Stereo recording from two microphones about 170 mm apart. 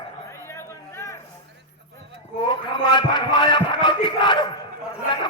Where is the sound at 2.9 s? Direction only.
25° left (ahead or behind).